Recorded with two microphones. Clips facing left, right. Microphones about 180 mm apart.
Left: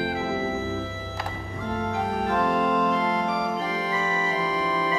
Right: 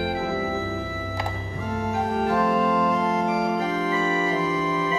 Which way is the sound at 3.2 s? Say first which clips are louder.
Right 3 dB; 15° right (ahead or behind).